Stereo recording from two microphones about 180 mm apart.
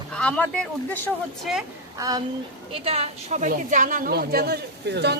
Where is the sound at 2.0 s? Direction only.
20° right (ahead or behind).